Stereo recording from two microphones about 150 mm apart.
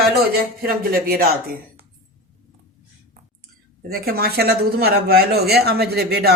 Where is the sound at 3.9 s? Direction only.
90° right.